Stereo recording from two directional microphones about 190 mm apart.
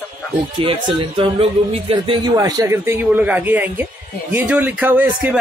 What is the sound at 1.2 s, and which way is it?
A man's voice, 30° right (ahead or behind).